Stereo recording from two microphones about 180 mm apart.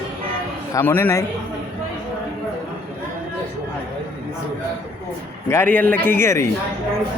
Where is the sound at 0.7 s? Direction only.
15° left (ahead or behind).